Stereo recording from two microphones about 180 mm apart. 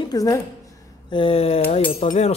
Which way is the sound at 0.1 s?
20° left (ahead or behind).